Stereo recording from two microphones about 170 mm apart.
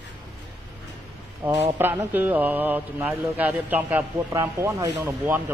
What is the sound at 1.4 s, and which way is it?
Speech, 10° right (ahead or behind).